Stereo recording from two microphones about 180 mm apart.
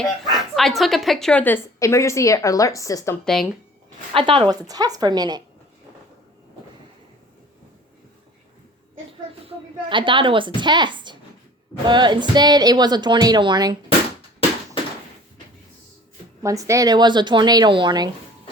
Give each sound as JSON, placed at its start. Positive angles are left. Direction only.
{"t": 0.3, "sound": "speech", "side_deg": 0}
{"t": 3.2, "sound": "speech", "side_deg": 0}
{"t": 4.1, "sound": "a woman's voice", "side_deg": -30}
{"t": 9.9, "sound": "a woman's voice", "side_deg": -25}
{"t": 16.4, "sound": "a woman's voice", "side_deg": -15}